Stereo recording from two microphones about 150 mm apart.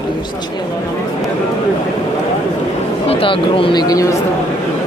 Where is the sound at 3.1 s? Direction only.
35° left (ahead or behind).